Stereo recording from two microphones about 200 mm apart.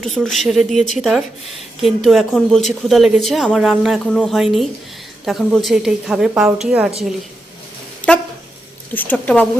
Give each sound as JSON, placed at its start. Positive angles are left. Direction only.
{"t": 0.0, "sound": "speech", "side_deg": 0}
{"t": 8.0, "sound": "a sound", "side_deg": 40}
{"t": 8.9, "sound": "a woman's voice", "side_deg": 10}